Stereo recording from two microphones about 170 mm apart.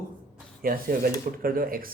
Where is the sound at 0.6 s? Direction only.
55° right (ahead or behind).